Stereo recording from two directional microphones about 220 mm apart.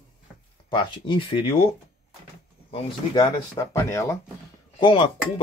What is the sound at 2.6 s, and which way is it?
Speech, 25° left (ahead or behind).